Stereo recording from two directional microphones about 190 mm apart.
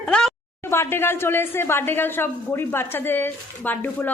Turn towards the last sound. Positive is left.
turn(degrees=10)  # may be behind; listen again after turning